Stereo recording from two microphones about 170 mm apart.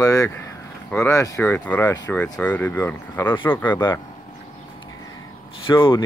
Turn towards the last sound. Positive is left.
turn(degrees=30)  # may be behind; listen again after turning